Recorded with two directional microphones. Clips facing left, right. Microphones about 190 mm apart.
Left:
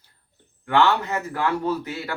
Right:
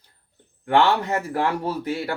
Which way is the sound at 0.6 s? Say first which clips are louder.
Right 1 dB; 30° right (ahead or behind).